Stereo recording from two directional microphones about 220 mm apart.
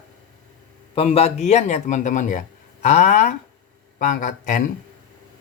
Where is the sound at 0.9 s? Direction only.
30° left (ahead or behind).